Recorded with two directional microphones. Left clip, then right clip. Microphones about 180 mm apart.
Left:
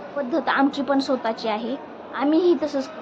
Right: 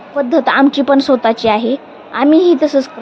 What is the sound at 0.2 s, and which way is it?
A woman's voice, 40° right (ahead or behind).